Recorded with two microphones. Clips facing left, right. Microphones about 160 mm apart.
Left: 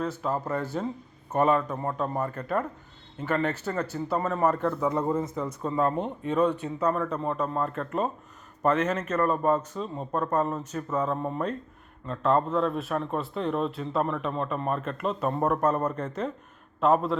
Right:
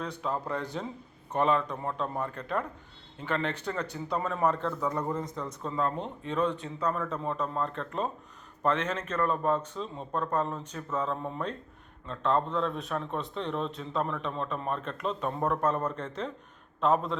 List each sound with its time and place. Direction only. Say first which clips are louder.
0.0 s a man's voice: left 4 dB; 5° left (ahead or behind)
5.7 s speech: left 5 dB; 50° left (ahead or behind)
6.6 s a man's voice: left 5 dB; 5° left (ahead or behind)